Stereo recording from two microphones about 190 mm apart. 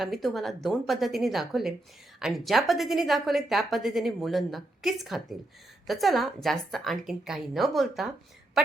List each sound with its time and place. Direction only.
0.0 s a woman's voice: centre (ahead or behind)